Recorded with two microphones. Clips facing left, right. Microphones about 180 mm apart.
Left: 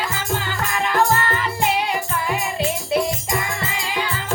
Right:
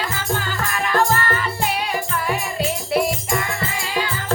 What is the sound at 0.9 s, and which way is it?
Music, 20° left (ahead or behind).